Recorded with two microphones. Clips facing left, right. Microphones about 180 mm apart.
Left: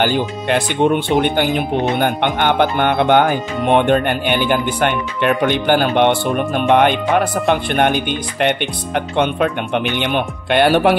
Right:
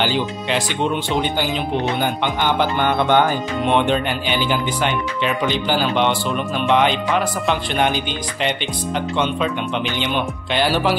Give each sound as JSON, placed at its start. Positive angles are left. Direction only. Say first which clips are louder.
{"t": 0.0, "sound": "speech", "louder": "left 3 dB", "side_deg": 55}